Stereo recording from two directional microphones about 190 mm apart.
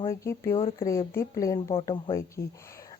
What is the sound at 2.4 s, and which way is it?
Speech, 15° left (ahead or behind).